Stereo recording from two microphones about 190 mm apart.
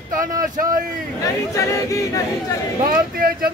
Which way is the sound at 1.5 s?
15° left (ahead or behind).